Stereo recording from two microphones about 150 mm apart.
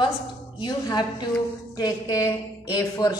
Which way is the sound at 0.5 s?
30° left (ahead or behind).